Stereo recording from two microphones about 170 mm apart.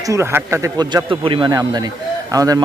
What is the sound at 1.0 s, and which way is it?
Speech, 30° right (ahead or behind).